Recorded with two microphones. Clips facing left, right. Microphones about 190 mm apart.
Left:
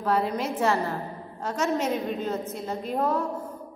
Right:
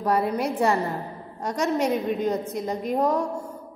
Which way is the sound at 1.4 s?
15° right (ahead or behind).